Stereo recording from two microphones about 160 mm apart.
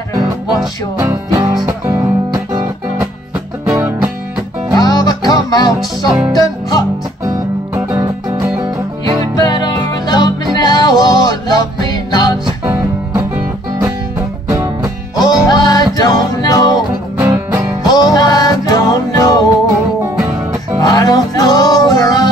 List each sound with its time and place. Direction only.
0.9 s music: 20° right (ahead or behind)
4.7 s music: 25° left (ahead or behind)
5.8 s music: centre (ahead or behind)
6.3 s music: 20° left (ahead or behind)
7.2 s music: 20° right (ahead or behind)
9.3 s music: 25° left (ahead or behind)
12.6 s music: 20° right (ahead or behind)
14.5 s music: 20° right (ahead or behind)
15.4 s music: 25° left (ahead or behind)
17.2 s music: 20° right (ahead or behind)
17.8 s music: 25° left (ahead or behind)
20.8 s music: 20° left (ahead or behind)